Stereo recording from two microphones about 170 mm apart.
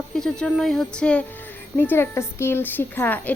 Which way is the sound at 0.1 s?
5° left (ahead or behind).